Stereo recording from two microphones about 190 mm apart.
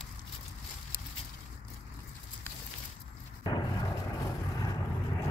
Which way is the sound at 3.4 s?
20° left (ahead or behind).